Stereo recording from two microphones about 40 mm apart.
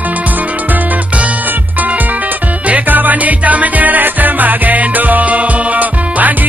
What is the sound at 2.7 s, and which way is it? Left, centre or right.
Music, right.